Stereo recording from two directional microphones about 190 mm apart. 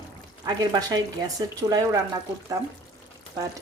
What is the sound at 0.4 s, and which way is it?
Speech, 20° right (ahead or behind).